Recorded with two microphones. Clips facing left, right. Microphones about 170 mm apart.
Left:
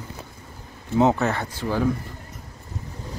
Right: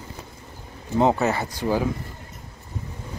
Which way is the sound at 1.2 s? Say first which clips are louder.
Right 2 dB; 10° right (ahead or behind).